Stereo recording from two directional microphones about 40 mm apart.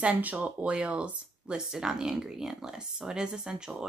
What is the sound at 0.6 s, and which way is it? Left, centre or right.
Speech, right.